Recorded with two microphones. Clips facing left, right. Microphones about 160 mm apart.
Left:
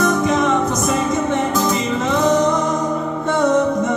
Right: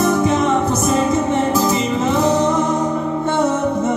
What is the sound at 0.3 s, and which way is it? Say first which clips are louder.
Music: even; 30° right (ahead or behind).